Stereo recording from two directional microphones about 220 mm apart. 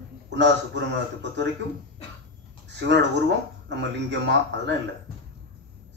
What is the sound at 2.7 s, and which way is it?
A man's voice, 50° right (ahead or behind).